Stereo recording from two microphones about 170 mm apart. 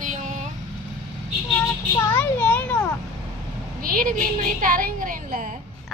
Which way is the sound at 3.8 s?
55° right (ahead or behind).